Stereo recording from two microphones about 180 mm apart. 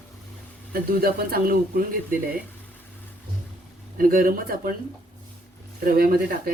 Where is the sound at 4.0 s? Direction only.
50° right (ahead or behind).